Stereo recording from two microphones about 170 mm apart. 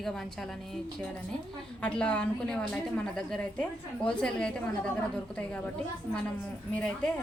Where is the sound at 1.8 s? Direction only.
5° left (ahead or behind).